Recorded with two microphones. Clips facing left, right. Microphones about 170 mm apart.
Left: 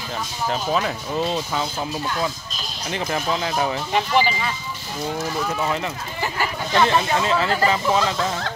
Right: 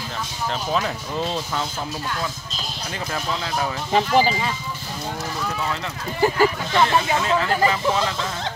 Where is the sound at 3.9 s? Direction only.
35° right (ahead or behind).